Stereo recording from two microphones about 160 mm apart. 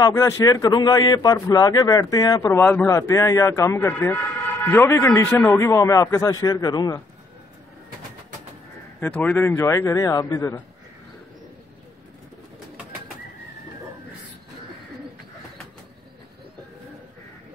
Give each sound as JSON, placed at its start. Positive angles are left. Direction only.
{"t": 0.0, "sound": "a man's voice", "side_deg": 20}
{"t": 9.0, "sound": "a man's voice", "side_deg": 10}